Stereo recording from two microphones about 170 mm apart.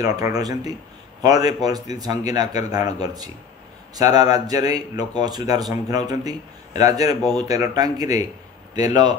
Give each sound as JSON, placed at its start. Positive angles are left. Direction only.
{"t": 0.0, "sound": "speech", "side_deg": -20}